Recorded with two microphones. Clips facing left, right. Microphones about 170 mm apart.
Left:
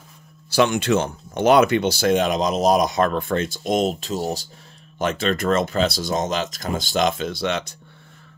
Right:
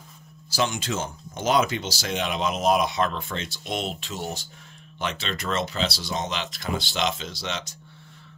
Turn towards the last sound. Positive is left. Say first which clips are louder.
# left 9 dB
turn(degrees=60)  # may be behind; listen again after turning